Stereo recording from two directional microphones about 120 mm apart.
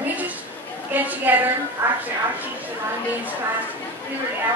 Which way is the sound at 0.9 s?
15° right (ahead or behind).